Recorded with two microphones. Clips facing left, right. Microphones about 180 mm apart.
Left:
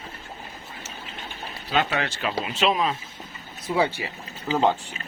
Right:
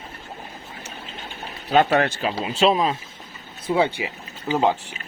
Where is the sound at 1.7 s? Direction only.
50° right (ahead or behind).